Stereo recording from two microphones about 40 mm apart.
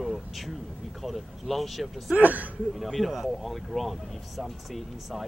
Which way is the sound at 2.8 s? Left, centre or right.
Centre.